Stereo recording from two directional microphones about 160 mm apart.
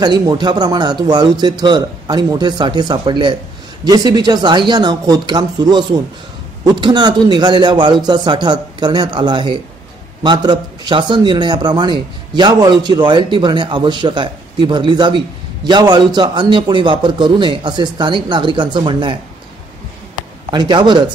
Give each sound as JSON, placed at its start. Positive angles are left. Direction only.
{"t": 0.0, "sound": "a man's voice", "side_deg": -25}
{"t": 20.5, "sound": "a man's voice", "side_deg": -30}